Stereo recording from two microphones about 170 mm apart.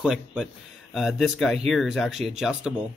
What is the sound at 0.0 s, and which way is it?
Speech, 5° right (ahead or behind).